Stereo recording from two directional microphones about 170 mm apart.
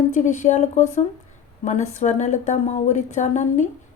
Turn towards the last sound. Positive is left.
turn(degrees=45)  # may be behind; listen again after turning